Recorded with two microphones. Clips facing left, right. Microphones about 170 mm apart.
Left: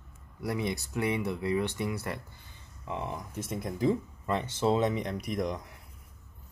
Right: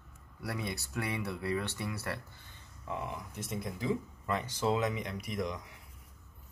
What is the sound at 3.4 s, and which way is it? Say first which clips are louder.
Speech: left 8 dB; 45° left (ahead or behind).